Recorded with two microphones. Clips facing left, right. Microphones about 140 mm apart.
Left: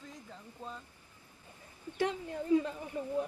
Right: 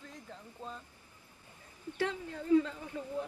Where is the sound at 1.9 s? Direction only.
15° left (ahead or behind).